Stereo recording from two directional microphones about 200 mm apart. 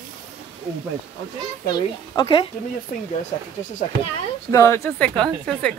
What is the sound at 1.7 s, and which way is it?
Speech, 20° left (ahead or behind).